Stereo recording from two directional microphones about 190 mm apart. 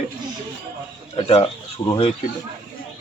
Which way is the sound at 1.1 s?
30° left (ahead or behind).